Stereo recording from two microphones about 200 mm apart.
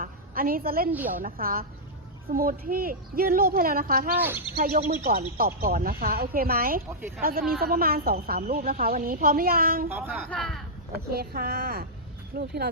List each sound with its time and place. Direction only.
0.0 s a sound: 45° right (ahead or behind)
1.2 s speech: 45° right (ahead or behind)
4.2 s speech: 10° right (ahead or behind)
4.5 s speech: 45° right (ahead or behind)
9.9 s speech: 10° right (ahead or behind)
10.2 s speech: 5° left (ahead or behind)
11.1 s speech: 50° right (ahead or behind)